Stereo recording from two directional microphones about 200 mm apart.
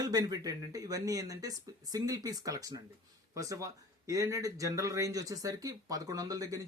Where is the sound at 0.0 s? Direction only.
20° right (ahead or behind).